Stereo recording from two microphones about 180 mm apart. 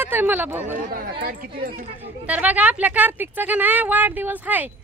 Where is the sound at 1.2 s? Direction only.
55° right (ahead or behind).